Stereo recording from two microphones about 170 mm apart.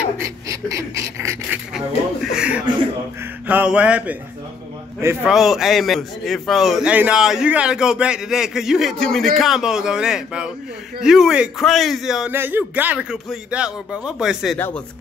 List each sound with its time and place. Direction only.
0.2 s a sound: 20° right (ahead or behind)
2.3 s mantra: 5° right (ahead or behind)
5.2 s a man's voice: centre (ahead or behind)